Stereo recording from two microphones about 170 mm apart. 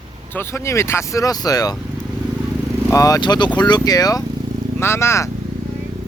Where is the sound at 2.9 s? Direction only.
20° left (ahead or behind).